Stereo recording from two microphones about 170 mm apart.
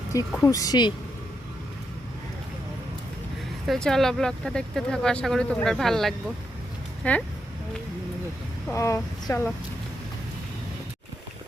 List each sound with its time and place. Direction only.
0.4 s speech: 20° left (ahead or behind)
3.7 s speech: centre (ahead or behind)
8.7 s speech: 15° left (ahead or behind)